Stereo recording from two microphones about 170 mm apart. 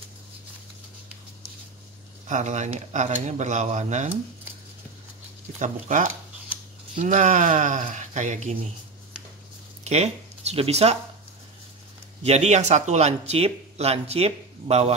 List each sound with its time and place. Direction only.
2.2 s speech: 45° right (ahead or behind)
5.6 s speech: 45° right (ahead or behind)
9.8 s speech: 40° right (ahead or behind)
12.2 s speech: 40° right (ahead or behind)